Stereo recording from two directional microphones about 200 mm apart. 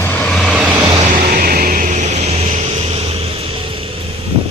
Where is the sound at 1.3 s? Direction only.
45° right (ahead or behind); by 3.9 s 25° right (ahead or behind).